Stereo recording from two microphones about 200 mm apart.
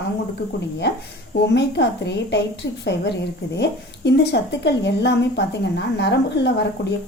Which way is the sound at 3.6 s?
60° left (ahead or behind).